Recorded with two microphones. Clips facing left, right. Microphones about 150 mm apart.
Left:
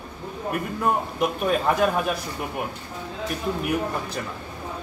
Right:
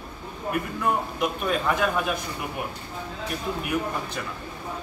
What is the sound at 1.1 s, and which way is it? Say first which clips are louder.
Speech: left 3 dB; 40° left (ahead or behind).